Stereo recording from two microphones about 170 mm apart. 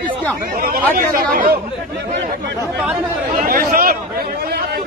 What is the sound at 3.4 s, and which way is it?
Speech, 55° right (ahead or behind).